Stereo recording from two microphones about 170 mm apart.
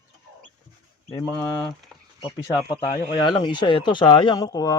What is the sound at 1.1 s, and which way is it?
Speech, 20° left (ahead or behind).